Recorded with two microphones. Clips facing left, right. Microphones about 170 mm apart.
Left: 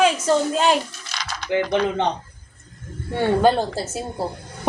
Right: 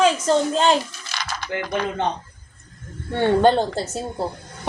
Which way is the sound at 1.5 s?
20° left (ahead or behind).